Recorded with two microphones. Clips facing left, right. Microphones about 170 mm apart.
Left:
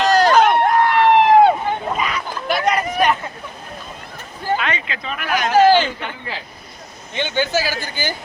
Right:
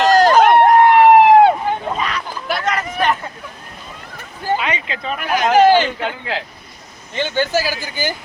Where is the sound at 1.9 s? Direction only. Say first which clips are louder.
Even; 5° left (ahead or behind).